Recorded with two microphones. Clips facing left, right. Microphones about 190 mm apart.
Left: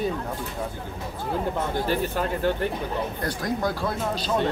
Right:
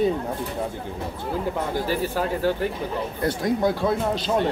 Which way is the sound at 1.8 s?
10° right (ahead or behind).